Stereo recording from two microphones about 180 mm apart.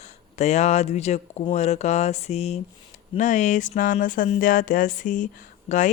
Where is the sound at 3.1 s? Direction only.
40° left (ahead or behind).